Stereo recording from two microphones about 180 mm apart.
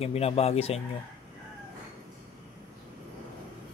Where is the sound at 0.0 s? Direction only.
35° left (ahead or behind).